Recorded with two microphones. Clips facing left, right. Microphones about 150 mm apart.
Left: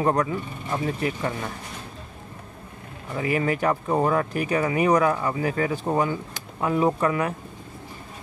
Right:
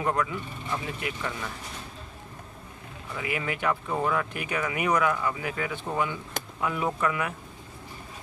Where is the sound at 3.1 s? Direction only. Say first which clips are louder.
Left 8 dB; 40° left (ahead or behind).